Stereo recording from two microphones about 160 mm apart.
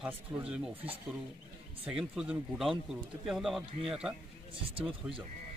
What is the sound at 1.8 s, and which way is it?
Speech, 5° right (ahead or behind).